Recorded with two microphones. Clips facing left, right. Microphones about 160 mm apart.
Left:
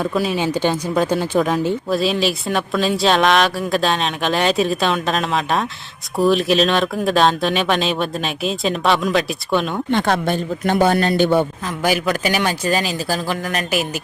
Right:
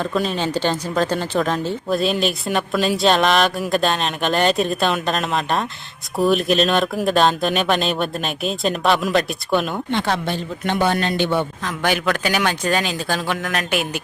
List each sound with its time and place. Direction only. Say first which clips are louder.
0.0 s speech: left 2 dB; 5° left (ahead or behind)
9.9 s a man's voice: left 4 dB; 50° left (ahead or behind)
11.8 s speech: left 2 dB; 5° left (ahead or behind)